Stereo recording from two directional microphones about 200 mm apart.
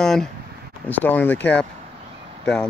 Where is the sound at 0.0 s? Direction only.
5° left (ahead or behind).